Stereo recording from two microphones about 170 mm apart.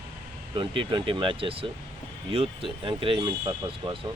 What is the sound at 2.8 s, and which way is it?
Speech, 30° right (ahead or behind).